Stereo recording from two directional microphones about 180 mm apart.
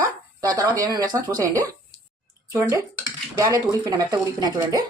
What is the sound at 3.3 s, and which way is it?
Speech, 20° right (ahead or behind).